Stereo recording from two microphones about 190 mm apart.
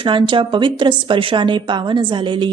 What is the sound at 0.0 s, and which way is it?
A woman's voice, 25° right (ahead or behind).